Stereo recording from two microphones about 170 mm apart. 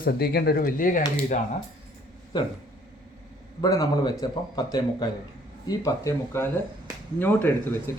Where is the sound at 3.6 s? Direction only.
20° left (ahead or behind).